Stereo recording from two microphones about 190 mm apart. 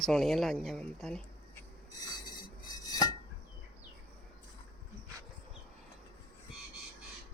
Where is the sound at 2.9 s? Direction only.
20° left (ahead or behind).